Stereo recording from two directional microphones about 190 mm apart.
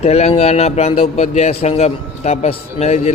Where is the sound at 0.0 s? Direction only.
35° left (ahead or behind).